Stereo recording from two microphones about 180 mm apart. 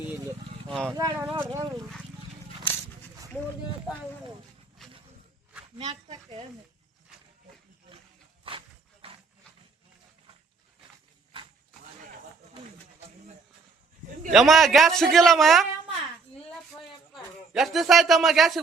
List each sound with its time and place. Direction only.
0.7 s a man's voice: 5° left (ahead or behind)
0.9 s speech: 20° right (ahead or behind)
4.8 s a sound: centre (ahead or behind)
5.7 s speech: 25° right (ahead or behind)
8.4 s dog: 30° right (ahead or behind)
14.3 s a man's voice: centre (ahead or behind)
17.5 s a man's voice: centre (ahead or behind)